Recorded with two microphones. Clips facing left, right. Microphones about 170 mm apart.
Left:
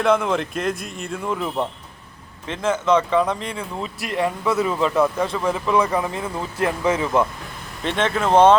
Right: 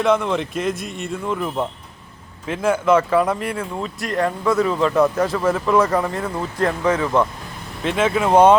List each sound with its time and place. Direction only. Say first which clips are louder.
0.0 s speech: right 1 dB; centre (ahead or behind)
2.5 s speech: right 2 dB; 10° right (ahead or behind); by 7.3 s 5° left (ahead or behind)
7.9 s speech: right 2 dB; 5° right (ahead or behind)